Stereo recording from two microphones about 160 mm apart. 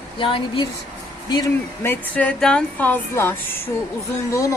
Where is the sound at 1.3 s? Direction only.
25° left (ahead or behind).